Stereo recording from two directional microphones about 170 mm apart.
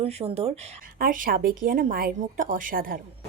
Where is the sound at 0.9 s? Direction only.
55° right (ahead or behind).